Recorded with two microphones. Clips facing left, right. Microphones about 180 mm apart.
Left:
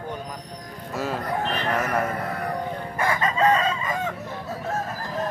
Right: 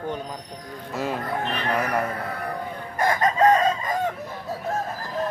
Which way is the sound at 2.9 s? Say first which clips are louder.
Right 3 dB; 40° right (ahead or behind).